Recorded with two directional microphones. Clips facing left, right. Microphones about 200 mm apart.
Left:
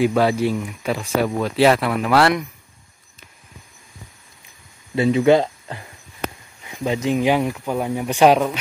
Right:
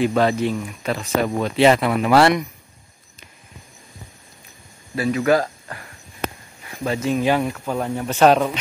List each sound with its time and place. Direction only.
0.0 s speech: 10° left (ahead or behind)
4.9 s speech: 25° left (ahead or behind)